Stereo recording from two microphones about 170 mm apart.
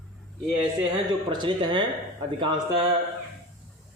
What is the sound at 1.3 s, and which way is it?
Speech, 30° right (ahead or behind).